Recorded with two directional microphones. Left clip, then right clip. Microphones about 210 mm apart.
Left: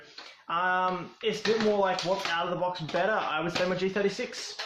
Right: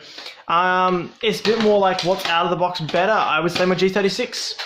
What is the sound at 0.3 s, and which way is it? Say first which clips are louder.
Speech: right 10 dB; 45° right (ahead or behind).